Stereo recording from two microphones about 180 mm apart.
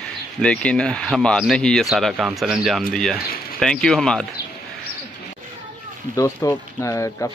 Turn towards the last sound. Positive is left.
turn(degrees=15)  # may be behind; listen again after turning